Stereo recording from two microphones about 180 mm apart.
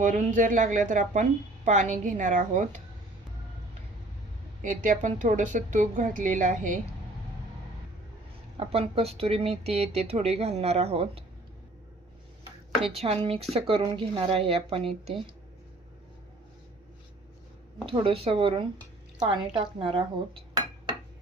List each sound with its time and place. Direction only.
0.0 s a woman's voice: 45° right (ahead or behind)
4.6 s a woman's voice: 45° right (ahead or behind)
8.5 s speech: 35° right (ahead or behind)
13.0 s speech: 35° right (ahead or behind)
17.8 s speech: 30° right (ahead or behind)